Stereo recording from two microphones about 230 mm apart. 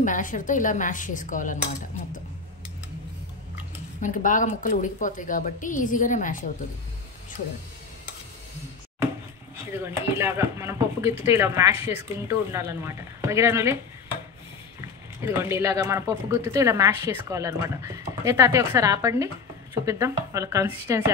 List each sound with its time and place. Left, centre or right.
0.0 s a woman's voice: left
4.0 s a woman's voice: left
9.7 s speech: centre
14.8 s speech: centre